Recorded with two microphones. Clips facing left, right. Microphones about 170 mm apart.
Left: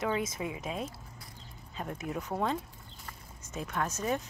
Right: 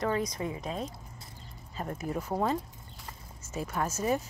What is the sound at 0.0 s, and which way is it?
Speech, 5° left (ahead or behind).